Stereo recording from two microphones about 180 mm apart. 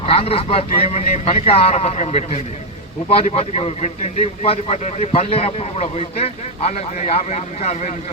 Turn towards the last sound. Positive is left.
turn(degrees=40)  # may be behind; listen again after turning